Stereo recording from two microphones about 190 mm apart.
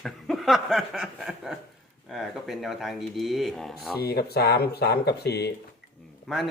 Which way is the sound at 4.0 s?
55° left (ahead or behind).